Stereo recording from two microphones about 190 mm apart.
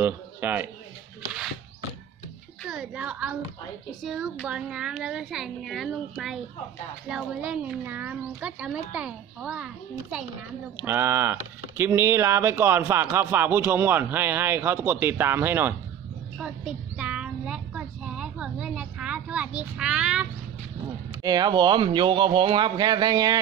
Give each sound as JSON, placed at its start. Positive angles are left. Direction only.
{"t": 0.0, "sound": "a man's voice", "side_deg": -10}
{"t": 2.6, "sound": "a woman's voice", "side_deg": -5}
{"t": 10.8, "sound": "speech", "side_deg": -10}
{"t": 17.0, "sound": "a sound", "side_deg": -5}
{"t": 21.2, "sound": "speech", "side_deg": -20}